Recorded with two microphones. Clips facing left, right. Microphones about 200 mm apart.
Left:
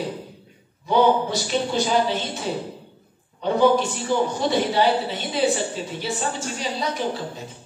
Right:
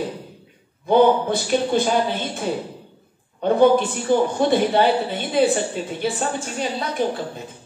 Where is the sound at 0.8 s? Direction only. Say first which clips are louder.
Right 3 dB; 55° right (ahead or behind).